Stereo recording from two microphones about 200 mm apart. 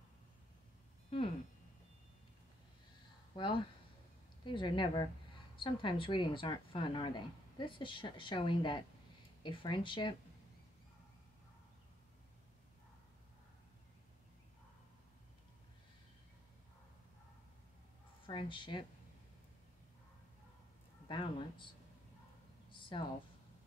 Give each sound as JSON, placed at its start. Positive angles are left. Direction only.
{"t": 3.3, "sound": "speech", "side_deg": 25}
{"t": 18.2, "sound": "speech", "side_deg": 25}
{"t": 21.1, "sound": "speech", "side_deg": 25}
{"t": 22.7, "sound": "a sound", "side_deg": 25}